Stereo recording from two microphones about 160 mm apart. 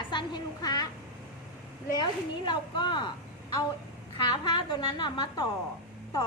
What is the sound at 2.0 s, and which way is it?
A woman's voice, 30° left (ahead or behind).